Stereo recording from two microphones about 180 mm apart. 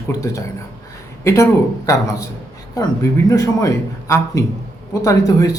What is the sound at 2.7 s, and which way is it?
A man's voice, 20° left (ahead or behind).